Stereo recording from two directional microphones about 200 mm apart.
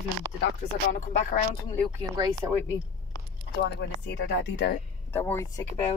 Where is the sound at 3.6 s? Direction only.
60° left (ahead or behind).